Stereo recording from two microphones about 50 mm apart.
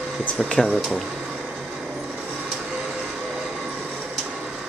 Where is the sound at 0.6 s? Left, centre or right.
Centre.